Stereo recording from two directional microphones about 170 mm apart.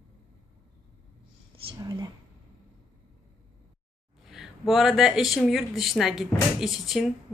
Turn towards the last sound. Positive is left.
turn(degrees=0)  # may be behind; listen again after turning